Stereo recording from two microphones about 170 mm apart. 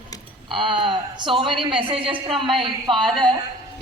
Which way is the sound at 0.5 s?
30° right (ahead or behind).